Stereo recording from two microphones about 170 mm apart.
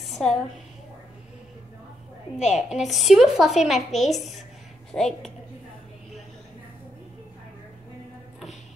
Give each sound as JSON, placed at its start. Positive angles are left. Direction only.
{"t": 0.0, "sound": "a sound", "side_deg": 0}
{"t": 2.3, "sound": "a woman's voice", "side_deg": 45}
{"t": 2.9, "sound": "a woman's voice", "side_deg": 0}